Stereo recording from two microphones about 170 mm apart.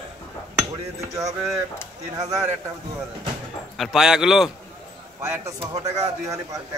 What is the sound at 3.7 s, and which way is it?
Speech, centre (ahead or behind).